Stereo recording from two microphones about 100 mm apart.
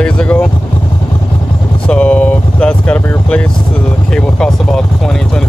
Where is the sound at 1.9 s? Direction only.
15° left (ahead or behind).